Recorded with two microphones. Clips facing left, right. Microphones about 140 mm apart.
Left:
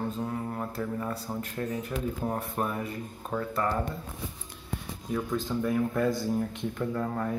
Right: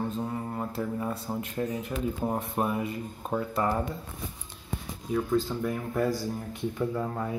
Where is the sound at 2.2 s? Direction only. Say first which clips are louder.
Right 4 dB; 15° right (ahead or behind).